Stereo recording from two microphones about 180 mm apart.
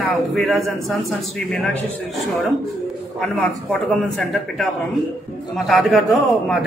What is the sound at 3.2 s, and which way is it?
A man's voice, 5° left (ahead or behind).